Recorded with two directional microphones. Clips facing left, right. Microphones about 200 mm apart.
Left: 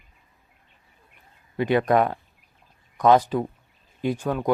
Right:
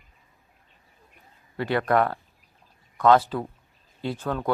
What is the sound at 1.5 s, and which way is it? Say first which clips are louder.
Speech: left 3 dB; 15° left (ahead or behind).